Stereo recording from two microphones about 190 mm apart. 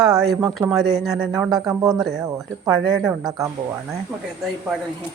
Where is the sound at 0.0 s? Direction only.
Centre (ahead or behind).